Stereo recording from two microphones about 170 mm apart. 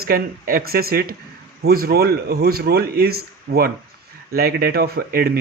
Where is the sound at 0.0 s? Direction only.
60° right (ahead or behind).